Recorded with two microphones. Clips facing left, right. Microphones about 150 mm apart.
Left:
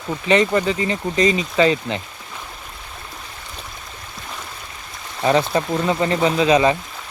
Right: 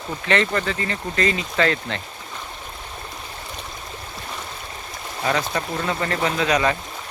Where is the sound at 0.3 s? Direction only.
15° left (ahead or behind).